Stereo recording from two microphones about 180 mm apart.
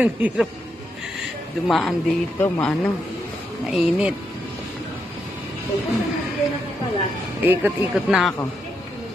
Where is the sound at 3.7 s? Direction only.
Centre (ahead or behind).